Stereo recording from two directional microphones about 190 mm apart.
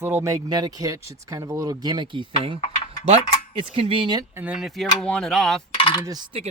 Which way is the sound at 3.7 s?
30° right (ahead or behind).